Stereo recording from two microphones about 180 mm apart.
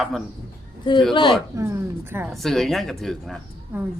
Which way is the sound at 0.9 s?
25° left (ahead or behind).